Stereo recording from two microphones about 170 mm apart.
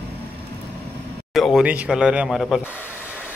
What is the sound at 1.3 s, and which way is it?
Speech, centre (ahead or behind).